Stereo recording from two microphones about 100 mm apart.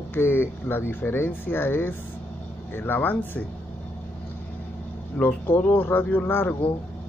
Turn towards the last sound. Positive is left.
turn(degrees=20)  # may be behind; listen again after turning